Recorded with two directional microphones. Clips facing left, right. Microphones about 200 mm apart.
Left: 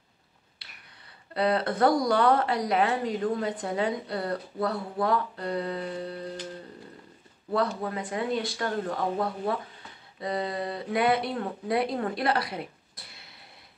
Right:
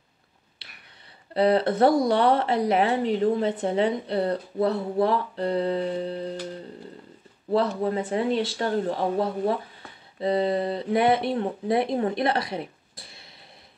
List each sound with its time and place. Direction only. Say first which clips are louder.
1.3 s speech: right 5 dB; 30° right (ahead or behind)
7.5 s speech: right 5 dB; 30° right (ahead or behind)